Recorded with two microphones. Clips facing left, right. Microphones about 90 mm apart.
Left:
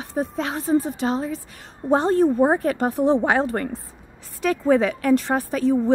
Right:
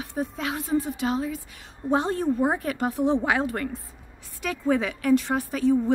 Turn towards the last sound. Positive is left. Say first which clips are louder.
# left 2 dB
turn(degrees=35)  # may be behind; listen again after turning